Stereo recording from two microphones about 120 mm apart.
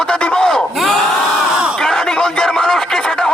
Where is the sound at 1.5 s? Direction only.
5° right (ahead or behind).